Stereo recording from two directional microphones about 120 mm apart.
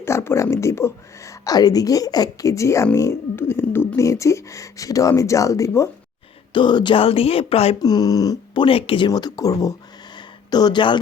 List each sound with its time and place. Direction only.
0.0 s speech: 20° left (ahead or behind)
6.5 s speech: 40° left (ahead or behind)
7.8 s speech: 35° left (ahead or behind)
8.6 s speech: 50° left (ahead or behind)
9.0 s speech: 35° left (ahead or behind)
10.2 s a sound: 35° left (ahead or behind)